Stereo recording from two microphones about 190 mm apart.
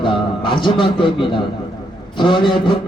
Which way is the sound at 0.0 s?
25° left (ahead or behind).